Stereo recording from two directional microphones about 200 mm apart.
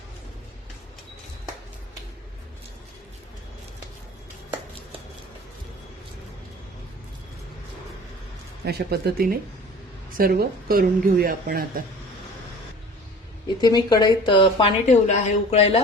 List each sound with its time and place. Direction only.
8.6 s speech: 55° right (ahead or behind)
13.6 s a woman's voice: 20° left (ahead or behind)